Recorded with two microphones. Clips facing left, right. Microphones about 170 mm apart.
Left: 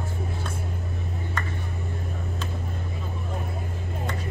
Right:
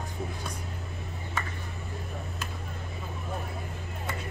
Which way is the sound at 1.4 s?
10° right (ahead or behind).